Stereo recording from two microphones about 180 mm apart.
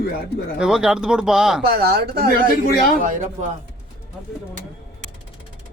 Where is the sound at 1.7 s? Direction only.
60° right (ahead or behind).